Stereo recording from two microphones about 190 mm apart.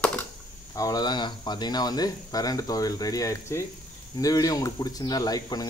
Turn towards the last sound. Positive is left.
turn(degrees=20)  # may be behind; listen again after turning